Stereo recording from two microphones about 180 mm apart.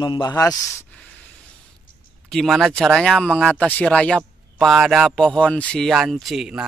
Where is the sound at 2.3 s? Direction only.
Centre (ahead or behind).